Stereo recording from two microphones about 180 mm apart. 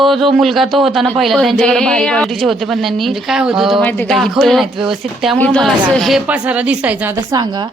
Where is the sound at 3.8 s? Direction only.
10° left (ahead or behind); by 7.1 s 10° right (ahead or behind).